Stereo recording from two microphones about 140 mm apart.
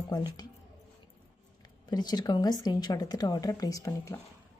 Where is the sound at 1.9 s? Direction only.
30° left (ahead or behind).